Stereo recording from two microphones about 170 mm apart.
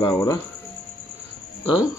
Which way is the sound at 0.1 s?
15° left (ahead or behind).